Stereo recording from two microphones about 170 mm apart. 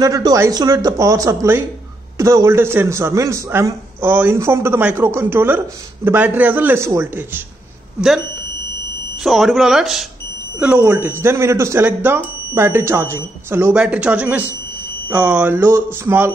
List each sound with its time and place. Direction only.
0.0 s a man's voice: 20° right (ahead or behind)
9.2 s a man's voice: centre (ahead or behind)